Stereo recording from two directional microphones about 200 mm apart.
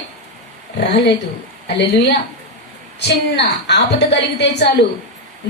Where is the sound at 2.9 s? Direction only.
55° left (ahead or behind).